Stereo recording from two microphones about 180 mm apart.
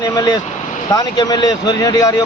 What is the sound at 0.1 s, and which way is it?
Speech, 20° left (ahead or behind).